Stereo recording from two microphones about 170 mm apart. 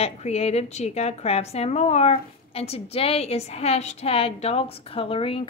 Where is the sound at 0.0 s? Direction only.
40° left (ahead or behind).